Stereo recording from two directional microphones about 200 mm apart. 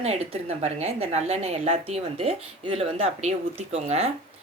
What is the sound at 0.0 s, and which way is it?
A woman's voice, 30° right (ahead or behind).